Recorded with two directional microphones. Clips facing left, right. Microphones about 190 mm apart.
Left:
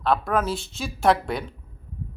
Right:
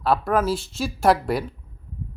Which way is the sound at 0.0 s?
5° right (ahead or behind).